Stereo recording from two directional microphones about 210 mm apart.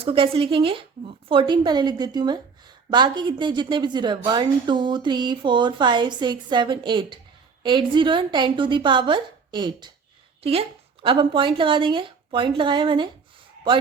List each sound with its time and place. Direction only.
0.0 s a woman's voice: 25° right (ahead or behind)